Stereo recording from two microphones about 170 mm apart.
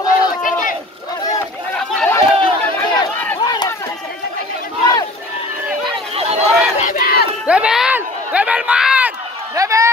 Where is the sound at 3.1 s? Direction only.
15° left (ahead or behind).